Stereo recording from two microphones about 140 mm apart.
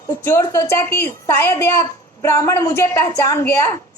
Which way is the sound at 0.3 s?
20° left (ahead or behind).